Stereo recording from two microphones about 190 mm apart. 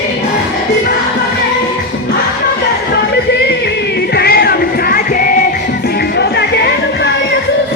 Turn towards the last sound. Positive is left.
turn(degrees=65)  # may be behind; listen again after turning